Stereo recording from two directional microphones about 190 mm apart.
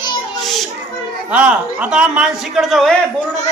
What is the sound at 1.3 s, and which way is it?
A man's voice, 5° right (ahead or behind).